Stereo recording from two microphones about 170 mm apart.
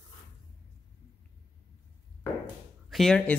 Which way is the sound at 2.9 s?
5° left (ahead or behind).